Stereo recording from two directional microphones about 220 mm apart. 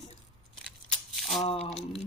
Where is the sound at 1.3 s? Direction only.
30° left (ahead or behind).